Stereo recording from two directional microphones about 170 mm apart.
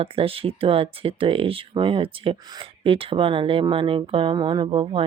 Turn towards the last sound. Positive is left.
turn(degrees=-30)  # may be behind; listen again after turning